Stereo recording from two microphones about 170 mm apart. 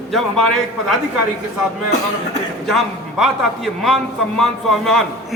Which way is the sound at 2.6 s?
Centre (ahead or behind).